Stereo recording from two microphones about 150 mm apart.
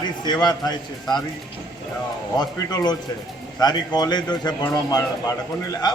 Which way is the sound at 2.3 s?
25° left (ahead or behind).